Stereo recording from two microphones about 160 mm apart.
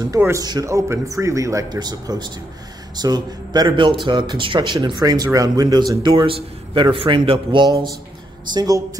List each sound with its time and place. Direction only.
0.1 s a man's voice: 20° right (ahead or behind)